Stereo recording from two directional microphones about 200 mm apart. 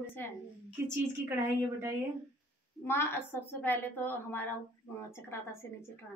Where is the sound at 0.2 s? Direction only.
10° left (ahead or behind).